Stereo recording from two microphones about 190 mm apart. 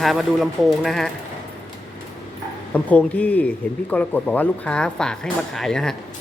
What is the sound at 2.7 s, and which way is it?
Speech, 5° left (ahead or behind).